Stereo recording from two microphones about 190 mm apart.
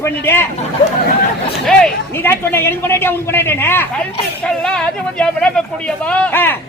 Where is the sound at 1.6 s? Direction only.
5° left (ahead or behind).